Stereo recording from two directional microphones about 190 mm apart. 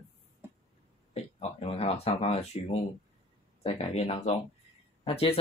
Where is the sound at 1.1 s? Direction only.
35° left (ahead or behind).